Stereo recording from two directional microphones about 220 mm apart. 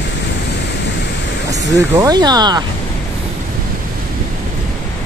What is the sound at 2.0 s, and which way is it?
Speech, 20° right (ahead or behind).